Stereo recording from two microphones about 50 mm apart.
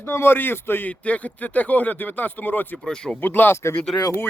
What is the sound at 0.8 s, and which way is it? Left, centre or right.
Speech, left.